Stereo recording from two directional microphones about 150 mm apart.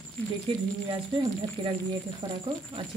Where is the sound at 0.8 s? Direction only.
35° right (ahead or behind).